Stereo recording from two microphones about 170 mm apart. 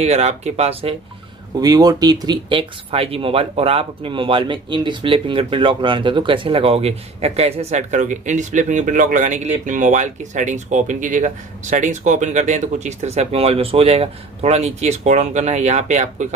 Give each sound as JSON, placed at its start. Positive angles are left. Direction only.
{"t": 0.0, "sound": "speech", "side_deg": -40}
{"t": 1.6, "sound": "speech", "side_deg": -20}